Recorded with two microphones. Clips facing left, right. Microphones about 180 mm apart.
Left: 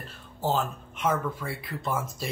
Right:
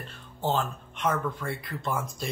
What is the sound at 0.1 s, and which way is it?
Speech, 5° left (ahead or behind).